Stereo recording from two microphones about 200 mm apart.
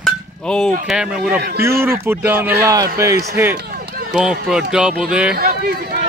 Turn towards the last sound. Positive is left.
turn(degrees=-45)  # may be behind; listen again after turning